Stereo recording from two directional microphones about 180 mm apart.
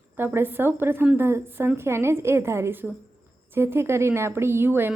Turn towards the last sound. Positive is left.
turn(degrees=-10)  # may be behind; listen again after turning